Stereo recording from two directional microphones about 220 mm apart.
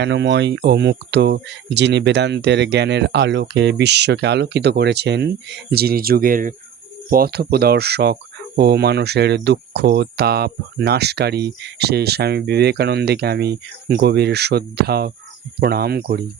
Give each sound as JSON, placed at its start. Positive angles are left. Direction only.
{"t": 0.0, "sound": "speech", "side_deg": -50}